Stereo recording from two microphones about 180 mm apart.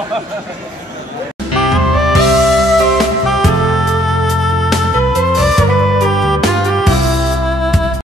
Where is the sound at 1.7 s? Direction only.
Centre (ahead or behind).